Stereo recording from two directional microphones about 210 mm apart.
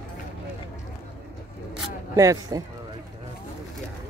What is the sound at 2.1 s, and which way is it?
Speech, 15° right (ahead or behind).